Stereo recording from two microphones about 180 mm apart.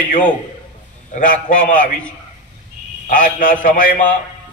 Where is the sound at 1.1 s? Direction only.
45° left (ahead or behind).